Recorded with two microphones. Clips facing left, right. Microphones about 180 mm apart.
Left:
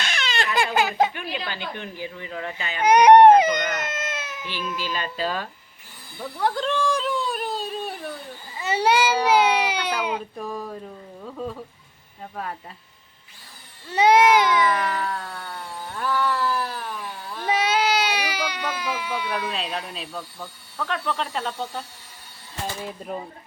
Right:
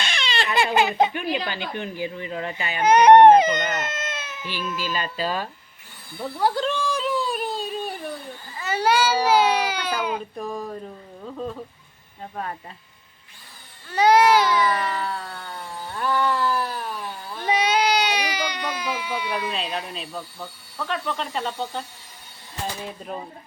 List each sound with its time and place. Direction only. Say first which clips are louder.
0.0 s crying: even; 5° left (ahead or behind)
0.7 s speech: right 3 dB; 5° left (ahead or behind)
1.1 s speech: right 5 dB; 15° right (ahead or behind)
2.8 s speech: even; 10° left (ahead or behind)
4.4 s speech: right 2 dB; 5° right (ahead or behind)
6.1 s a sound: right 2 dB; 5° right (ahead or behind)
8.5 s a child's voice: left 1 dB; 25° left (ahead or behind)
10.2 s speech: right 1 dB; centre (ahead or behind)
12.2 s speech: right 1 dB; centre (ahead or behind)
13.9 s baby cry: even; 20° left (ahead or behind)
14.6 s speech: left 1 dB; centre (ahead or behind)
17.3 s baby cry: right 1 dB; centre (ahead or behind)
20.4 s speech: left 1 dB; centre (ahead or behind)